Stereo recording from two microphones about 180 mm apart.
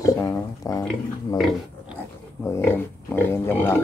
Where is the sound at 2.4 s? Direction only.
15° left (ahead or behind).